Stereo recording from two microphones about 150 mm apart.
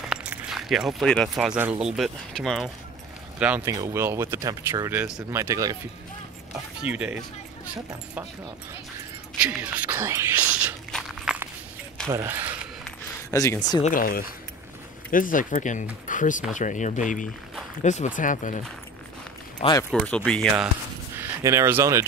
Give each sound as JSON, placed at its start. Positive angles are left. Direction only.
{"t": 0.1, "sound": "speech", "side_deg": -5}
{"t": 3.3, "sound": "speech", "side_deg": -10}
{"t": 3.6, "sound": "speech", "side_deg": -20}
{"t": 6.8, "sound": "speech", "side_deg": -10}
{"t": 9.4, "sound": "speech", "side_deg": -5}
{"t": 10.9, "sound": "walk", "side_deg": 0}
{"t": 12.1, "sound": "speech", "side_deg": -15}
{"t": 13.3, "sound": "speech", "side_deg": 20}
{"t": 13.8, "sound": "speech", "side_deg": 70}
{"t": 19.9, "sound": "speech", "side_deg": 0}
{"t": 21.1, "sound": "speech", "side_deg": -20}